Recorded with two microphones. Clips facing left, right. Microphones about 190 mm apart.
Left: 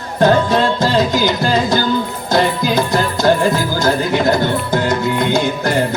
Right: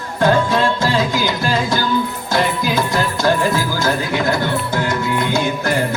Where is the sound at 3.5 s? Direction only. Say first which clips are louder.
Left 3 dB; 20° left (ahead or behind).